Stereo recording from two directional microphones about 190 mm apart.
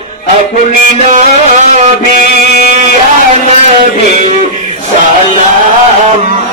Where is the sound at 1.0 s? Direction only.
40° right (ahead or behind).